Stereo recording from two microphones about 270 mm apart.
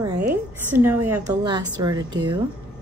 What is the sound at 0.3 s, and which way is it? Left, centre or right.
Speech, centre.